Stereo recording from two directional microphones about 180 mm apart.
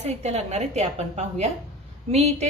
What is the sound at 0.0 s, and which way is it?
A woman's voice, 35° right (ahead or behind).